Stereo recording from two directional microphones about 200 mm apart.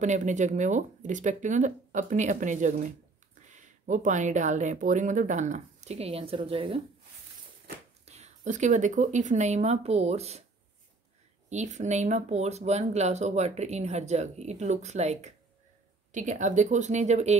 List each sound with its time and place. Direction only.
0.0 s speech: 35° right (ahead or behind)
8.0 s speech: 35° right (ahead or behind)
11.4 s speech: 35° right (ahead or behind)